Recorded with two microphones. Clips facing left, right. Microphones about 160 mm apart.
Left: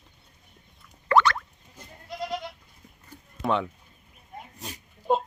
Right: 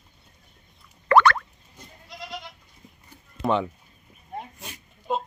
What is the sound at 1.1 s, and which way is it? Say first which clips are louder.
Boing: right 4 dB; 65° right (ahead or behind).